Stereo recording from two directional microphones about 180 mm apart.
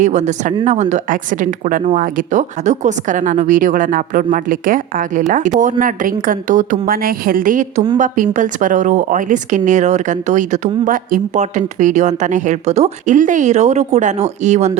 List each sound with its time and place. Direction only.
0.0 s speech: 40° right (ahead or behind)